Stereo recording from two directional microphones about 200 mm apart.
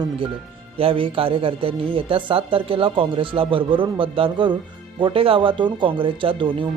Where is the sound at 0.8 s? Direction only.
25° right (ahead or behind).